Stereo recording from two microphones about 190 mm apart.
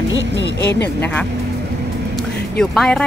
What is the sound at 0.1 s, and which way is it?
Speech, 65° left (ahead or behind).